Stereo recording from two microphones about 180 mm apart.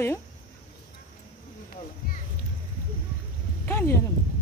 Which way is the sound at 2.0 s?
50° left (ahead or behind).